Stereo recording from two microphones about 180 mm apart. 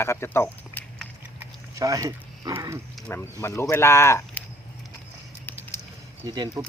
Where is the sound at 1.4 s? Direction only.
20° right (ahead or behind).